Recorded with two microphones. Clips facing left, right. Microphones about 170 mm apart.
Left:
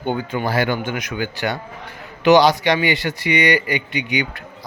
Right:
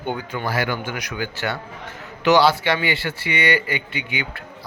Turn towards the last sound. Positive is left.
turn(degrees=15)  # may be behind; listen again after turning